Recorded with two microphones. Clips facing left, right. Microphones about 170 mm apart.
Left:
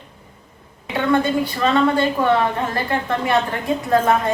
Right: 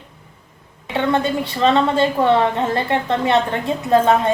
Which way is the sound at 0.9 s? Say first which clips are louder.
Left 1 dB; 25° right (ahead or behind).